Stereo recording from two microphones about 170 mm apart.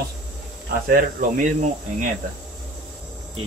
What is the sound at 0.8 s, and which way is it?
Speech, 55° right (ahead or behind).